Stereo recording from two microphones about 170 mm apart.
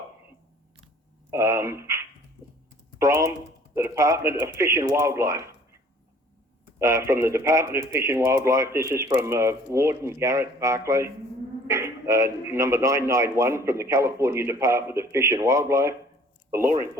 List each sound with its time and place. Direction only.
1.3 s speech: 15° right (ahead or behind)
3.0 s speech: 15° right (ahead or behind)
6.7 s speech: 15° right (ahead or behind)